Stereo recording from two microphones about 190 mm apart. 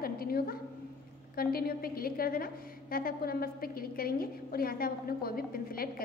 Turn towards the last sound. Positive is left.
turn(degrees=50)  # may be behind; listen again after turning